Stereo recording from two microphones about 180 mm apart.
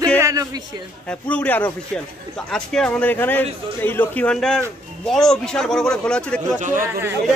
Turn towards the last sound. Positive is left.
turn(degrees=-15)  # may be behind; listen again after turning